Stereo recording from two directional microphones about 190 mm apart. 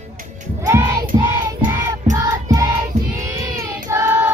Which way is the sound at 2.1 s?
20° right (ahead or behind).